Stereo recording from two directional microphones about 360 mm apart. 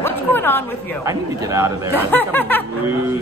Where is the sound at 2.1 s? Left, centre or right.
Centre.